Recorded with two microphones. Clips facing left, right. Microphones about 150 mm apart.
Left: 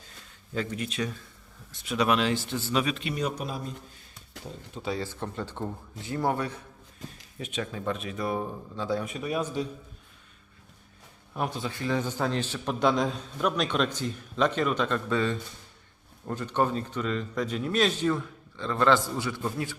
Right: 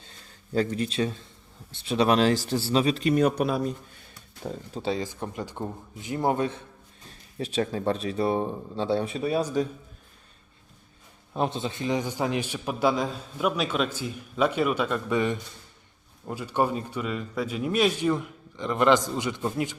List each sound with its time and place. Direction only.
0.5 s speech: 35° right (ahead or behind); by 3.7 s 65° right (ahead or behind)
4.7 s speech: 30° right (ahead or behind)
4.9 s a man's voice: 15° right (ahead or behind)
7.3 s speech: 35° right (ahead or behind)
11.3 s a man's voice: 25° right (ahead or behind)